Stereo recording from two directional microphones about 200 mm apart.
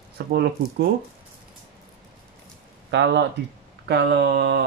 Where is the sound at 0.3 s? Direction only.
55° right (ahead or behind).